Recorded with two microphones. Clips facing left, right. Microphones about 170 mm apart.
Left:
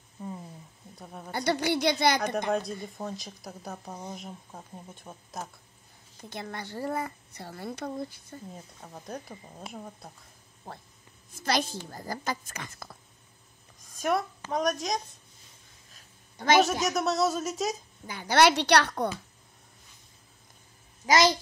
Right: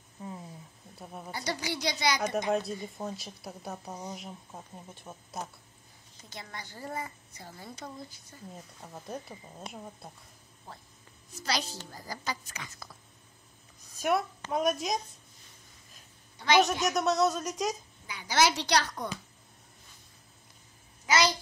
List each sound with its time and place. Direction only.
0.9 s speech: 5° right (ahead or behind)
1.3 s a woman's voice: 60° left (ahead or behind)
2.5 s speech: 5° right (ahead or behind)
6.3 s a woman's voice: 60° left (ahead or behind)
8.8 s speech: centre (ahead or behind)
10.7 s a woman's voice: 55° left (ahead or behind)
14.0 s speech: 5° right (ahead or behind)
16.3 s a woman's voice: 45° left (ahead or behind)
17.0 s speech: centre (ahead or behind)
18.0 s a woman's voice: 50° left (ahead or behind)
21.0 s a child's voice: 40° left (ahead or behind)